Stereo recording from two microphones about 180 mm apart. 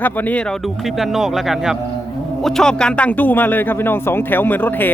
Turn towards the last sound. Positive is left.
turn(degrees=10)  # may be behind; listen again after turning